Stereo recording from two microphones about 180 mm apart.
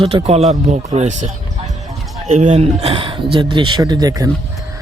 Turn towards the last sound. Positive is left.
turn(degrees=-20)  # may be behind; listen again after turning